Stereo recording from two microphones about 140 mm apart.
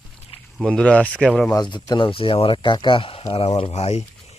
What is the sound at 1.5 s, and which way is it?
Speech, 30° left (ahead or behind).